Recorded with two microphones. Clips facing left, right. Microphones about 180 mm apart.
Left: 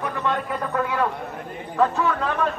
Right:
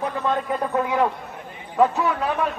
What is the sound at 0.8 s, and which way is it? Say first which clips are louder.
Speech: right 2 dB; 15° right (ahead or behind).